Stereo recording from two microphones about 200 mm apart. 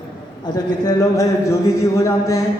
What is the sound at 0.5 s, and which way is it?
Speech, 20° left (ahead or behind).